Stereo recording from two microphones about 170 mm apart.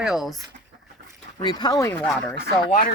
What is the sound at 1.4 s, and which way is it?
Speech, 25° left (ahead or behind).